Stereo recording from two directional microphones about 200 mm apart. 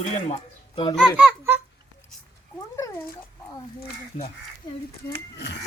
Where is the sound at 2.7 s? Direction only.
15° left (ahead or behind).